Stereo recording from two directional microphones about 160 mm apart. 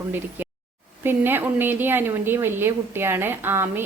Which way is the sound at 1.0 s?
15° right (ahead or behind).